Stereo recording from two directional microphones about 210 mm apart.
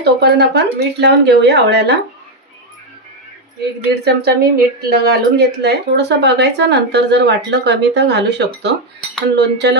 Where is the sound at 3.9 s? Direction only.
50° right (ahead or behind).